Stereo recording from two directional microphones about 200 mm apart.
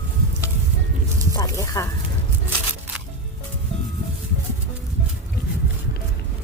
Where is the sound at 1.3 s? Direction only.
15° left (ahead or behind).